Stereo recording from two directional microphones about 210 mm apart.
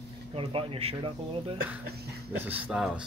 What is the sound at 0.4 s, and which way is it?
Speech, 25° right (ahead or behind).